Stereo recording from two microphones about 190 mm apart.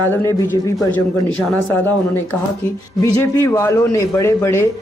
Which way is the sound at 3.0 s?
15° left (ahead or behind).